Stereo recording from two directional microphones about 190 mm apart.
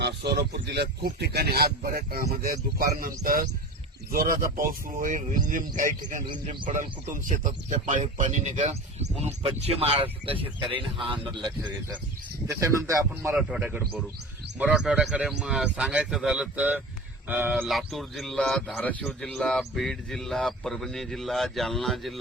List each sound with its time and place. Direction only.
0.0 s speech: 60° right (ahead or behind); by 13.3 s 15° right (ahead or behind)
13.3 s a man's voice: 5° right (ahead or behind)